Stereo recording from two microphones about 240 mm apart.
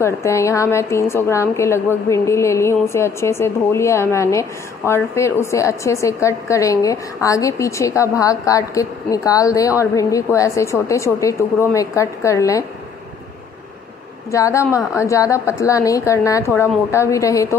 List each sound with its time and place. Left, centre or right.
0.0 s a woman's voice: centre
14.3 s a woman's voice: centre